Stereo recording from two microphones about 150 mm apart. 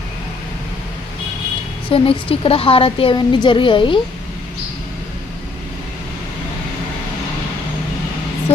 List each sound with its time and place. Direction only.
1.9 s a woman's voice: 35° left (ahead or behind)
8.5 s music: 45° left (ahead or behind)